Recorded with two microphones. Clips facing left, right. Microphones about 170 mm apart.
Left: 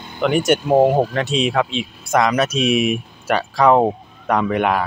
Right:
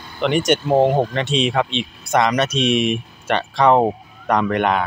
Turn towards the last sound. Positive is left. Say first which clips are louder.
# even
turn(degrees=5)  # may be behind; listen again after turning